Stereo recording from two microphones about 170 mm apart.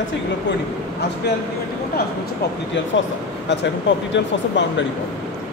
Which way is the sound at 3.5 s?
90° left.